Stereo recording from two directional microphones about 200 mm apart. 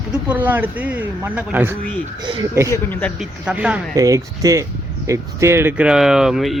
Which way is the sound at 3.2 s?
5° right (ahead or behind).